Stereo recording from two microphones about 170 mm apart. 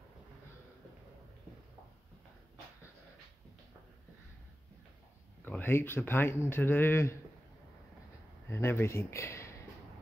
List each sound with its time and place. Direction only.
5.4 s speech: 10° left (ahead or behind)
8.5 s speech: 15° left (ahead or behind)